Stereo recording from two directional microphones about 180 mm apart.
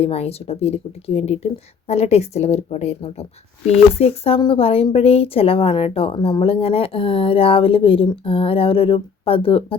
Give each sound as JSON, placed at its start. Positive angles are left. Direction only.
{"t": 0.0, "sound": "speech", "side_deg": 35}